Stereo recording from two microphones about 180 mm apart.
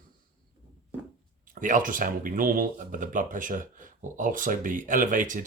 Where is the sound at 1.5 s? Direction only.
50° right (ahead or behind).